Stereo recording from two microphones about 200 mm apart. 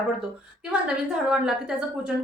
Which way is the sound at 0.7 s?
5° right (ahead or behind).